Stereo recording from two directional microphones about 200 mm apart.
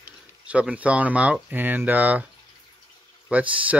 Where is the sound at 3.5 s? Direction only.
5° right (ahead or behind).